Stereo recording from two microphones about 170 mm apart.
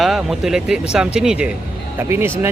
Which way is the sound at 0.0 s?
Centre (ahead or behind).